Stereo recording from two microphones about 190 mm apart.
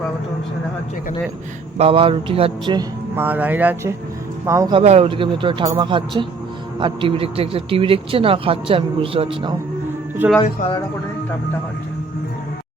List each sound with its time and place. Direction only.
1.8 s a man's voice: 30° right (ahead or behind)
3.2 s speech: 10° right (ahead or behind)
4.7 s a man's voice: 35° right (ahead or behind)
10.2 s speech: 10° right (ahead or behind)